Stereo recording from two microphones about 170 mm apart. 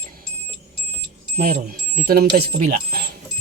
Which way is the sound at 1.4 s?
60° right (ahead or behind).